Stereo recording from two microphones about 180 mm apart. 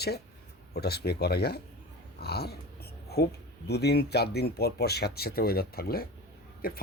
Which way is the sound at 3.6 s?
65° left (ahead or behind).